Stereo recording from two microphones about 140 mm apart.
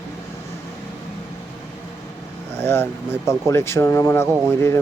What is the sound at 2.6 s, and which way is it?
Speech, 15° left (ahead or behind).